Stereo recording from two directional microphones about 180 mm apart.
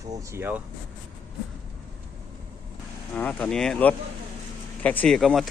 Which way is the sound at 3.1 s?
5° left (ahead or behind).